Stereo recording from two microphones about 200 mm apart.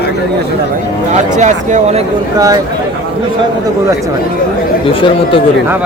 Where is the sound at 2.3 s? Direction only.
20° right (ahead or behind).